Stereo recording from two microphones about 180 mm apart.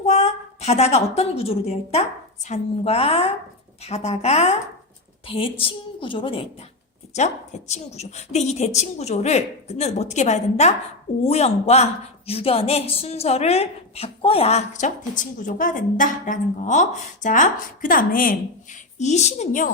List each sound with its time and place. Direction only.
0.0 s a woman's voice: 35° left (ahead or behind)
18.9 s a woman's voice: 40° left (ahead or behind)